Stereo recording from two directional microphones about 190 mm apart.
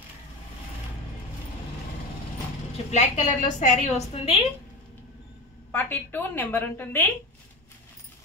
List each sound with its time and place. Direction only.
2.9 s a woman's voice: 40° left (ahead or behind)
5.7 s a woman's voice: 10° left (ahead or behind)